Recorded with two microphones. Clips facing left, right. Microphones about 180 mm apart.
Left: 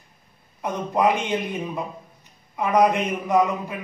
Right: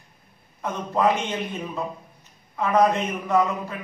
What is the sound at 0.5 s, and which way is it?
A man's voice, 15° left (ahead or behind).